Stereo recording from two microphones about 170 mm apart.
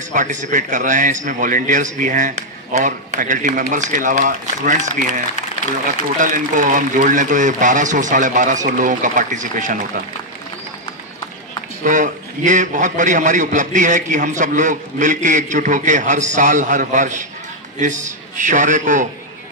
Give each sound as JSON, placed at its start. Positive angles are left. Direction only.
{"t": 0.1, "sound": "a man's voice", "side_deg": -45}
{"t": 6.1, "sound": "a man's voice", "side_deg": -50}
{"t": 11.8, "sound": "a man's voice", "side_deg": -50}